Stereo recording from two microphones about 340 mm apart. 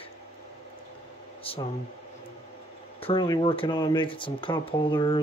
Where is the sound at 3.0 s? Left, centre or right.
Centre.